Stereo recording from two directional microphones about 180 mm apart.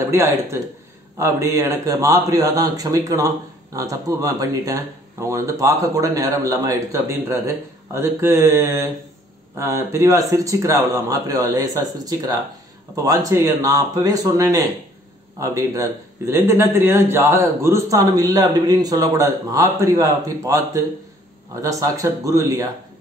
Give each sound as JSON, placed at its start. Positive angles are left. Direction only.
{"t": 0.0, "sound": "a man's voice", "side_deg": -15}